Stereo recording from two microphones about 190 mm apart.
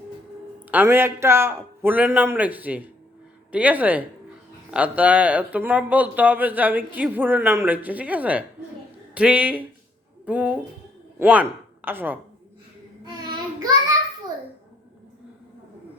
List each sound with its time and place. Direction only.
0.7 s speech: 10° right (ahead or behind)
13.3 s child singing: 20° right (ahead or behind)